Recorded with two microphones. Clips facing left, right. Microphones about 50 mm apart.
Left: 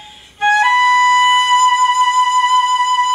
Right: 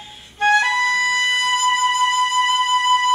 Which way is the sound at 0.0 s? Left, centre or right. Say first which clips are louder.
Left 1 dB; centre.